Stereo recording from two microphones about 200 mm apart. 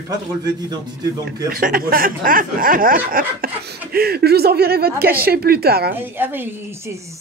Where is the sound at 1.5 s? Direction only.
45° right (ahead or behind).